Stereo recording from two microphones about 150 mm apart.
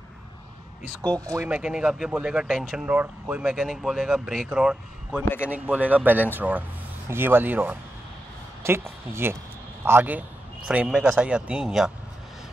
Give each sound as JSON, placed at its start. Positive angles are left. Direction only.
{"t": 1.2, "sound": "speech", "side_deg": -25}
{"t": 1.5, "sound": "speech", "side_deg": -5}